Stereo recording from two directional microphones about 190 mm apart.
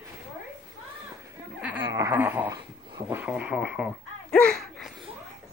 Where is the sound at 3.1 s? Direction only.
5° right (ahead or behind).